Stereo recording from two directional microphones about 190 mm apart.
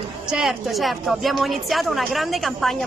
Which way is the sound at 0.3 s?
5° right (ahead or behind).